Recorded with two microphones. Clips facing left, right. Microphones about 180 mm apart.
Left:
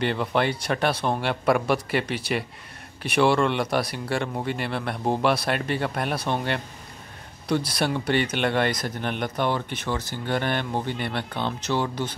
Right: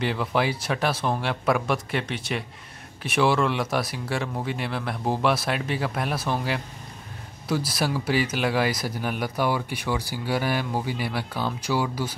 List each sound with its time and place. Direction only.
0.0 s speech: centre (ahead or behind)